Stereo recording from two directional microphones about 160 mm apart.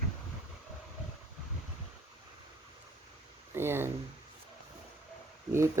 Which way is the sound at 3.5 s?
15° right (ahead or behind).